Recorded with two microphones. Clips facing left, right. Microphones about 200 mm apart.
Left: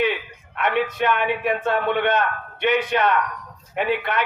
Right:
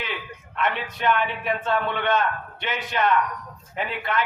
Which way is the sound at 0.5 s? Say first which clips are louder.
Left 5 dB; 60° left (ahead or behind).